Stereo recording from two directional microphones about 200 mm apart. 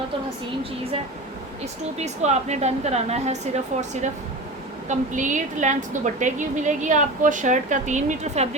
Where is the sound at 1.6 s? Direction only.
35° right (ahead or behind).